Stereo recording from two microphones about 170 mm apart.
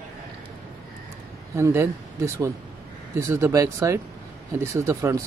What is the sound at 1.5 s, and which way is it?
Speech, 15° right (ahead or behind).